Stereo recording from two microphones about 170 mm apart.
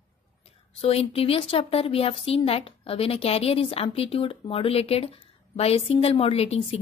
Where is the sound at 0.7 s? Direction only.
35° left (ahead or behind).